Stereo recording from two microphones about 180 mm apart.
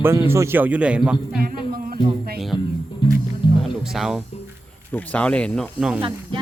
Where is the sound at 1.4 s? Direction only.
55° right (ahead or behind).